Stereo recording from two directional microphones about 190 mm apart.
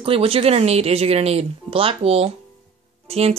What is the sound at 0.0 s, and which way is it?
Speech, 30° right (ahead or behind).